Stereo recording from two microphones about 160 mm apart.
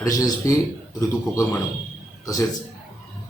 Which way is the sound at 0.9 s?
20° left (ahead or behind).